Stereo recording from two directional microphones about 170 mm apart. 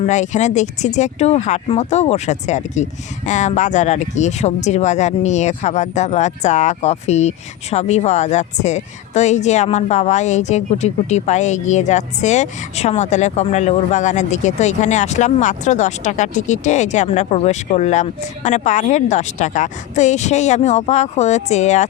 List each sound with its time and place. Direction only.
0.0 s speech: 45° left (ahead or behind)